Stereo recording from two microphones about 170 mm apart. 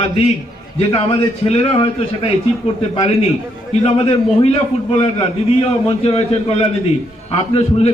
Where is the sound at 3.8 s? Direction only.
35° left (ahead or behind).